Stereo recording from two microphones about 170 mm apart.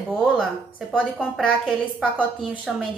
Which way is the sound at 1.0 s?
5° left (ahead or behind).